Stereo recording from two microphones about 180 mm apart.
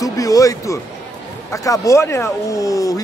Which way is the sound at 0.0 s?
20° left (ahead or behind).